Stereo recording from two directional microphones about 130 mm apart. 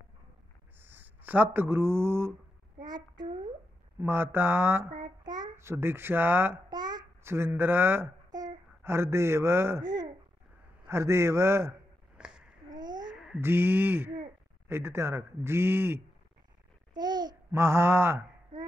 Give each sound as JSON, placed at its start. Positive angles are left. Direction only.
{"t": 0.7, "sound": "speech", "side_deg": -15}
{"t": 2.8, "sound": "child singing", "side_deg": -35}
{"t": 4.0, "sound": "speech", "side_deg": -15}
{"t": 5.0, "sound": "child singing", "side_deg": -30}
{"t": 5.6, "sound": "speech", "side_deg": -20}
{"t": 6.7, "sound": "babbling", "side_deg": -35}
{"t": 7.2, "sound": "a man's voice", "side_deg": -20}
{"t": 10.9, "sound": "a man's voice", "side_deg": -20}
{"t": 12.2, "sound": "a sound", "side_deg": -5}
{"t": 12.6, "sound": "a sound", "side_deg": -30}
{"t": 13.1, "sound": "a sound", "side_deg": -5}
{"t": 13.4, "sound": "a man's voice", "side_deg": -15}
{"t": 16.9, "sound": "babbling", "side_deg": -30}
{"t": 17.6, "sound": "a man's voice", "side_deg": -20}